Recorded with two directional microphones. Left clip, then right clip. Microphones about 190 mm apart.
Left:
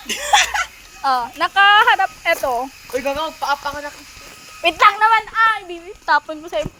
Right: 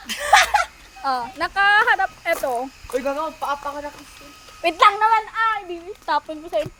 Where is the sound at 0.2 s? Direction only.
50° right (ahead or behind).